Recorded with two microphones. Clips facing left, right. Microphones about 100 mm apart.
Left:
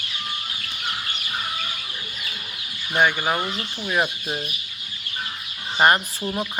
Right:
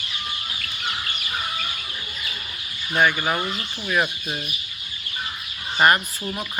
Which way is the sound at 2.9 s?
15° left (ahead or behind).